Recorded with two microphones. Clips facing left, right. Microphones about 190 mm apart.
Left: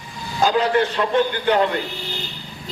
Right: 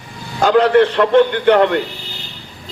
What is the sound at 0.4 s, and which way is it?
A man's voice, 65° right (ahead or behind).